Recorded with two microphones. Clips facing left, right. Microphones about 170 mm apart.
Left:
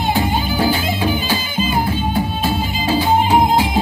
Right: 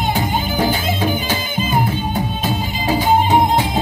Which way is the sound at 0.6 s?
20° right (ahead or behind).